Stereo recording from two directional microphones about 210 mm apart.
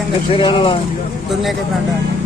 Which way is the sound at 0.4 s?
25° left (ahead or behind).